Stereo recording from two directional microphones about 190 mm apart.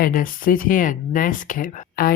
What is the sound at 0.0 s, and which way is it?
Speech, 45° left (ahead or behind).